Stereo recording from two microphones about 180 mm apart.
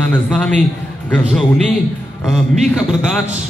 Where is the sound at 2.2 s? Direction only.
Centre (ahead or behind).